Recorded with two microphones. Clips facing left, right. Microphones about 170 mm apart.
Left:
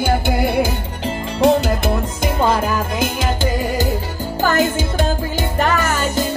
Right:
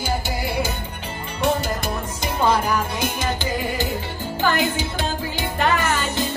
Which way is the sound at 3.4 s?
40° left (ahead or behind).